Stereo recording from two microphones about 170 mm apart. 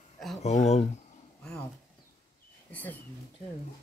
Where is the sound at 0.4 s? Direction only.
40° left (ahead or behind).